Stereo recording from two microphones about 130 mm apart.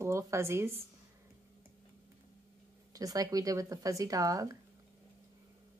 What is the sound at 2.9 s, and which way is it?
Speech, 25° right (ahead or behind).